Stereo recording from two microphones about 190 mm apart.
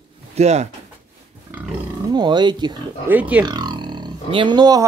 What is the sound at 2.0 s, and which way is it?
Speech, 20° right (ahead or behind).